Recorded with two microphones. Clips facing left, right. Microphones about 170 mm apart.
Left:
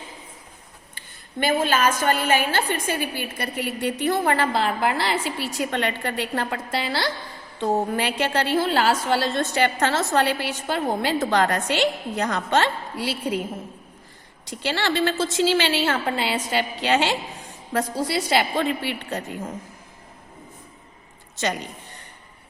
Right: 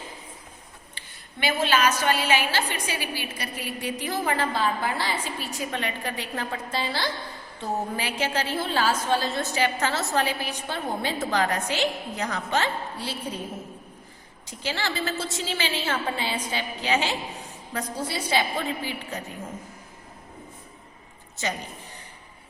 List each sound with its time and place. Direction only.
0.9 s a woman's voice: 45° left (ahead or behind); by 7.1 s 75° left (ahead or behind)
7.9 s a woman's voice: 65° left (ahead or behind); by 11.2 s 90° left
11.2 s a woman's voice: 70° left (ahead or behind); by 13.4 s 85° left
14.5 s a woman's voice: 70° left (ahead or behind)